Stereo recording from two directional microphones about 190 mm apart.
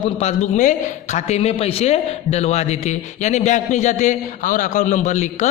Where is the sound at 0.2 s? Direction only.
40° left (ahead or behind).